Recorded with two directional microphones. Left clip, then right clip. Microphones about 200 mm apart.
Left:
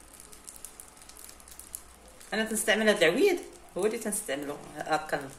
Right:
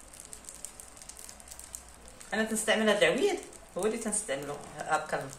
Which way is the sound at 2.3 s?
35° left (ahead or behind).